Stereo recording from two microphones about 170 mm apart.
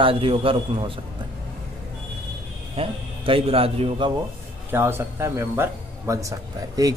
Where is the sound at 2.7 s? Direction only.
35° right (ahead or behind).